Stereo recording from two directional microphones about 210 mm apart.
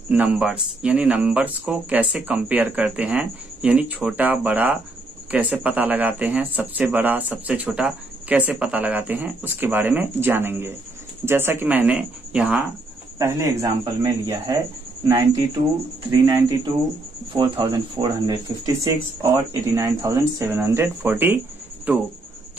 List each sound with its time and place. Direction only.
0.1 s speech: 5° right (ahead or behind)
13.2 s speech: 15° right (ahead or behind)
16.1 s speech: 15° right (ahead or behind)